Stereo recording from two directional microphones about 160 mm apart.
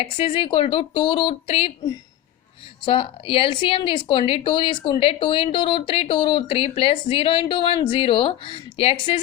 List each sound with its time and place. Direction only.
0.0 s a woman's voice: 35° left (ahead or behind)
2.8 s a woman's voice: 35° left (ahead or behind)